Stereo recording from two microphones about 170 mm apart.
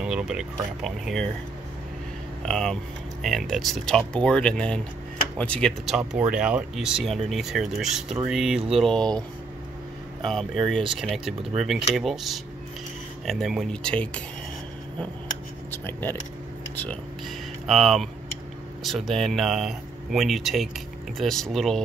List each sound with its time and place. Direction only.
0.0 s speech: 5° right (ahead or behind)
2.4 s speech: 5° left (ahead or behind)
10.2 s speech: centre (ahead or behind)
15.7 s speech: 10° left (ahead or behind)